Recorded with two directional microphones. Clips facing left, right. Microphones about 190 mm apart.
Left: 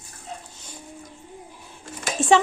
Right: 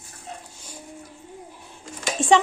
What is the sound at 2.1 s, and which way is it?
Dishes, 5° left (ahead or behind).